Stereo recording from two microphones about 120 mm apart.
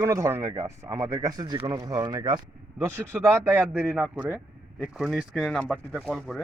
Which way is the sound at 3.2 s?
20° right (ahead or behind).